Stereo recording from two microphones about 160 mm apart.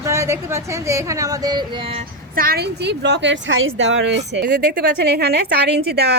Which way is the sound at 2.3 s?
70° right (ahead or behind).